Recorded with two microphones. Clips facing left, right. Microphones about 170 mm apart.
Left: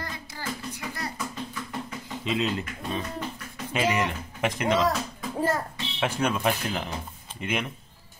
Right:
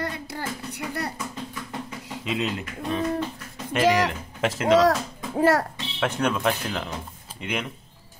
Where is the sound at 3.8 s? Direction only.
90° right.